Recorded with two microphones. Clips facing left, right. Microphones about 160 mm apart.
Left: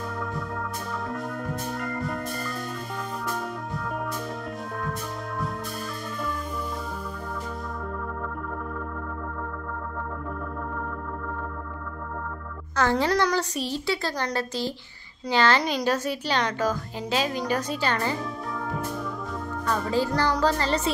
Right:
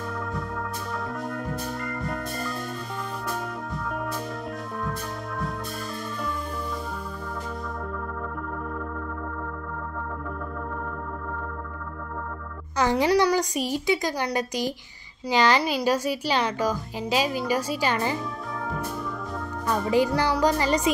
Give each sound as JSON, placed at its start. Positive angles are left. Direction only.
{"t": 12.7, "sound": "a woman's voice", "side_deg": -15}
{"t": 19.7, "sound": "a woman's voice", "side_deg": -15}